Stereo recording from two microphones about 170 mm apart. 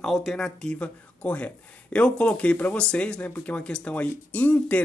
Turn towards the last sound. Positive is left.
turn(degrees=10)  # may be behind; listen again after turning